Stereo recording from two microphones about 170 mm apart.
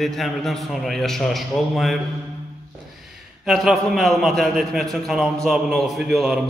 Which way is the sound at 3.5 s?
Centre (ahead or behind).